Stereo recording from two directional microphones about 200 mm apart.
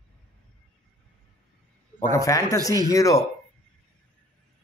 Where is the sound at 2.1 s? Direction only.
15° left (ahead or behind).